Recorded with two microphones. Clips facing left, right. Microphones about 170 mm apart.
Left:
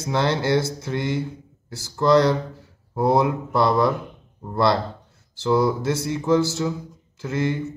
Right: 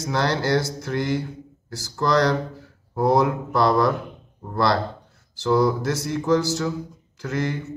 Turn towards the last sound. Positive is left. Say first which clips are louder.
# left 2 dB
turn(degrees=25)  # may be behind; listen again after turning